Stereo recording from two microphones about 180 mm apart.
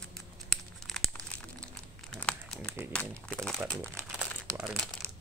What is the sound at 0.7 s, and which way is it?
Crumpling, centre (ahead or behind).